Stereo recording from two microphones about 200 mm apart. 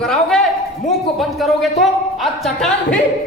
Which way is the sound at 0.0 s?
5° left (ahead or behind).